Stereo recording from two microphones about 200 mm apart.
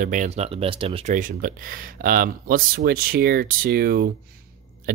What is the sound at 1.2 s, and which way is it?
Speech, 45° right (ahead or behind).